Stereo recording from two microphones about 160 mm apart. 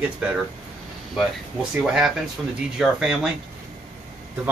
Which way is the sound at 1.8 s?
5° right (ahead or behind).